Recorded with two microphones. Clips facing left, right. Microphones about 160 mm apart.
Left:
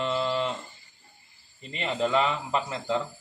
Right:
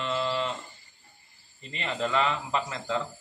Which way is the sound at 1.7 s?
5° left (ahead or behind).